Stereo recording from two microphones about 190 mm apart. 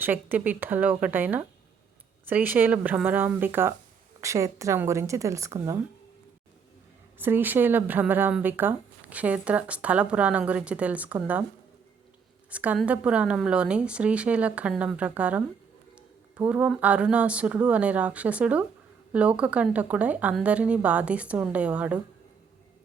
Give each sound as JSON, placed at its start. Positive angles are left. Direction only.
{"t": 0.0, "sound": "speech", "side_deg": -10}
{"t": 7.2, "sound": "speech", "side_deg": -10}
{"t": 12.5, "sound": "speech", "side_deg": -5}